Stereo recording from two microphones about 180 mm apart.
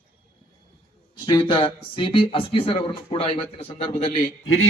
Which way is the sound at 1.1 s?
25° left (ahead or behind).